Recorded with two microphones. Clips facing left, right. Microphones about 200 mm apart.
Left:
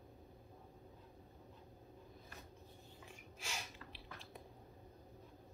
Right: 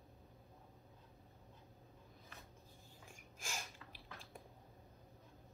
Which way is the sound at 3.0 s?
45° right (ahead or behind).